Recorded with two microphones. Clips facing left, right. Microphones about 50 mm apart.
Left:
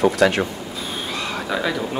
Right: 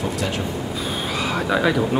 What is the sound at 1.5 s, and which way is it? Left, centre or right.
Speech, centre.